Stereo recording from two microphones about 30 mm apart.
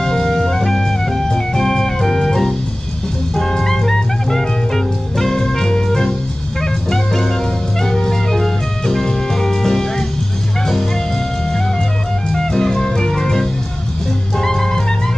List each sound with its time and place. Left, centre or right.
0.0 s music: centre
12.3 s music: centre